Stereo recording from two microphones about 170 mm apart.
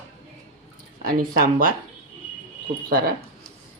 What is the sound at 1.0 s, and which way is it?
Speech, 60° right (ahead or behind).